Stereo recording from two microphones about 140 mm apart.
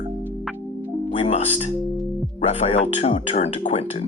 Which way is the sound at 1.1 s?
50° left (ahead or behind).